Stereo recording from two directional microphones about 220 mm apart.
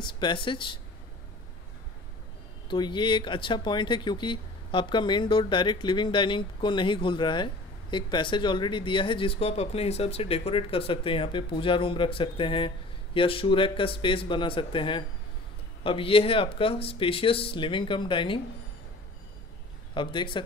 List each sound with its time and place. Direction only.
0.0 s speech: 20° left (ahead or behind)
2.7 s speech: 20° left (ahead or behind)
19.9 s speech: 20° left (ahead or behind)